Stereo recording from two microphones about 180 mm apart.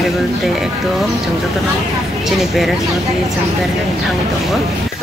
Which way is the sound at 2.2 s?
Centre (ahead or behind).